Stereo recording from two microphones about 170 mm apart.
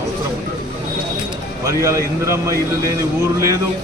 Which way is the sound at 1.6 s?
20° right (ahead or behind).